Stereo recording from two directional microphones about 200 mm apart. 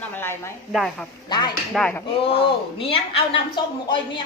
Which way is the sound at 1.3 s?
20° left (ahead or behind).